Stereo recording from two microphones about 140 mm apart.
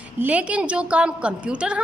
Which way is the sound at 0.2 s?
10° right (ahead or behind).